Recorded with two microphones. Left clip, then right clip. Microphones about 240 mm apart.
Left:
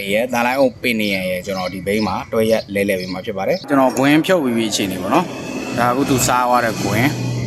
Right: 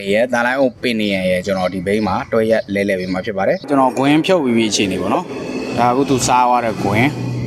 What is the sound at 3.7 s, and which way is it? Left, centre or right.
Speech, centre.